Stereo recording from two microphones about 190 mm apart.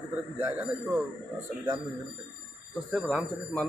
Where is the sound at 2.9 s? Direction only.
Centre (ahead or behind).